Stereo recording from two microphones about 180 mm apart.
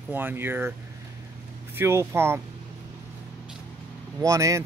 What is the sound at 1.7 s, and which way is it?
Speech, 15° right (ahead or behind).